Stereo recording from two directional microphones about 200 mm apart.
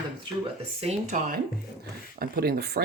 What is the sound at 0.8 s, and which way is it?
Speech, 35° right (ahead or behind).